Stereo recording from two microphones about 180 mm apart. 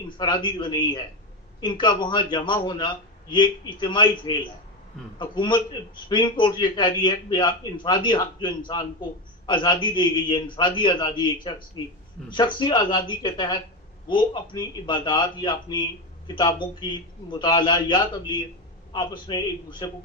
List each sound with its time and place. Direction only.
0.2 s a man's voice: 25° left (ahead or behind)